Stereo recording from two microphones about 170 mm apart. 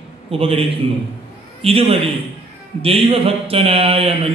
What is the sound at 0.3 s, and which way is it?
Speech, 35° right (ahead or behind).